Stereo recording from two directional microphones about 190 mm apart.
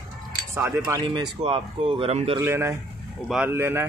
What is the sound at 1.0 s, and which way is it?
Speech, 25° right (ahead or behind).